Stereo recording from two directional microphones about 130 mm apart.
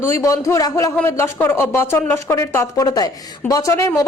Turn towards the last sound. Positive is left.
turn(degrees=25)  # may be behind; listen again after turning